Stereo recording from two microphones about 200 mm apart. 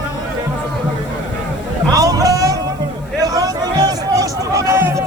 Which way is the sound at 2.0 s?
20° right (ahead or behind).